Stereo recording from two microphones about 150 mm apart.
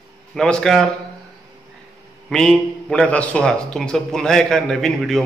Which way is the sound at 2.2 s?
5° left (ahead or behind).